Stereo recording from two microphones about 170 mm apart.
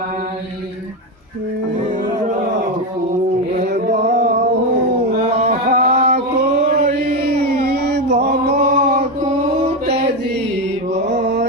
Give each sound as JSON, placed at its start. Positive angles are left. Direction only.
{"t": 3.6, "sound": "music", "side_deg": -65}
{"t": 4.0, "sound": "music", "side_deg": -45}
{"t": 5.2, "sound": "a sound", "side_deg": -40}
{"t": 6.6, "sound": "chant", "side_deg": -60}
{"t": 8.5, "sound": "chant", "side_deg": -45}
{"t": 11.2, "sound": "mantra", "side_deg": -90}